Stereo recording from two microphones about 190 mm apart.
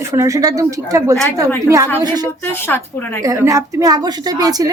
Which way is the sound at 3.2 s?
15° right (ahead or behind).